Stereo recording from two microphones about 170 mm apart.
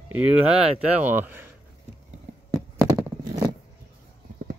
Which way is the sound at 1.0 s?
10° right (ahead or behind).